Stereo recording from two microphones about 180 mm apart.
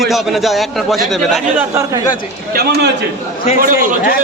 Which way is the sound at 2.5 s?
60° right (ahead or behind).